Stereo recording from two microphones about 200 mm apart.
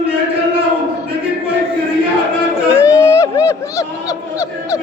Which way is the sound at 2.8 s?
15° left (ahead or behind).